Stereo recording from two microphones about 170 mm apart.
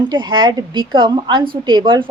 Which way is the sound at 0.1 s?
25° right (ahead or behind).